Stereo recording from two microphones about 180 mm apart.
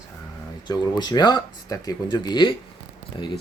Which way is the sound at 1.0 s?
25° left (ahead or behind).